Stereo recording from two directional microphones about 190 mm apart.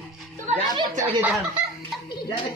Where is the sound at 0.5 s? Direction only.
30° right (ahead or behind).